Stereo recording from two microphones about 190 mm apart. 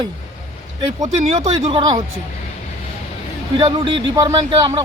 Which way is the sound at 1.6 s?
30° right (ahead or behind).